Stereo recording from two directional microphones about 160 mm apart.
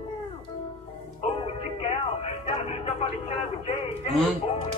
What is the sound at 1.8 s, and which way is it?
Music, 40° left (ahead or behind).